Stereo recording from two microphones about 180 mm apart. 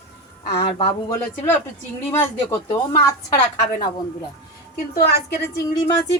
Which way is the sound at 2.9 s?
25° left (ahead or behind).